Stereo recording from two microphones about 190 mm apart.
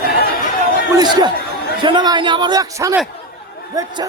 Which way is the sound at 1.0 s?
20° right (ahead or behind).